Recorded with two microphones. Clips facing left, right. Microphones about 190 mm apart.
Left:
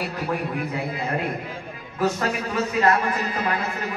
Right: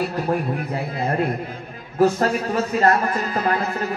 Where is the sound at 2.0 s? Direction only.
40° right (ahead or behind).